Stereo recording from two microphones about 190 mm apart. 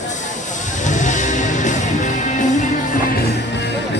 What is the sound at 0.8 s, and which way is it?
Music, 40° left (ahead or behind).